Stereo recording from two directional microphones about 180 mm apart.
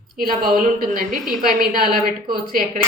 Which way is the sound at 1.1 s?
Centre (ahead or behind).